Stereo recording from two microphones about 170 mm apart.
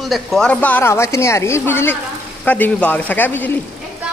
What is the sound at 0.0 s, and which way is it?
Speech, centre (ahead or behind).